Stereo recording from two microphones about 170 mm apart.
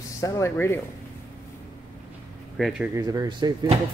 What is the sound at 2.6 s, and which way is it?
Speech, centre (ahead or behind).